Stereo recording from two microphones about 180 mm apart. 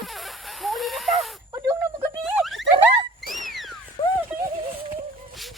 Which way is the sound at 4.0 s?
30° left (ahead or behind).